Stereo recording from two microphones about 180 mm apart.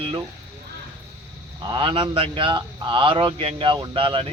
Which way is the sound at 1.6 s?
25° right (ahead or behind).